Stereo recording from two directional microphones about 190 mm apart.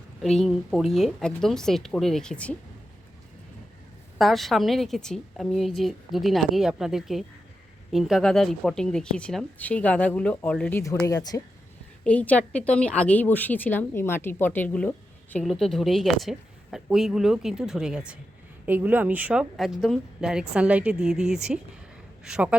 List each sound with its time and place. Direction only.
0.2 s a woman's voice: centre (ahead or behind)
4.2 s a woman's voice: centre (ahead or behind); by 11.4 s 20° left (ahead or behind)
12.0 s a woman's voice: 5° left (ahead or behind)